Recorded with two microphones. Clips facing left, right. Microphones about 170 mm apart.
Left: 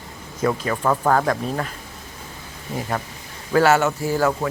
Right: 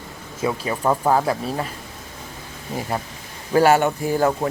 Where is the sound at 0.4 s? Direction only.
15° right (ahead or behind).